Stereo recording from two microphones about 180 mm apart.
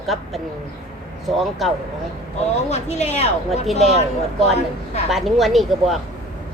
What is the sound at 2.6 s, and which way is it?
Speech, 40° left (ahead or behind).